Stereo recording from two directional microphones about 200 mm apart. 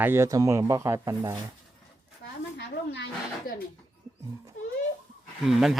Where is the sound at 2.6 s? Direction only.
60° left (ahead or behind).